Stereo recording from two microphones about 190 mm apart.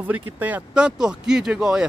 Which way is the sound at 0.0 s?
10° right (ahead or behind).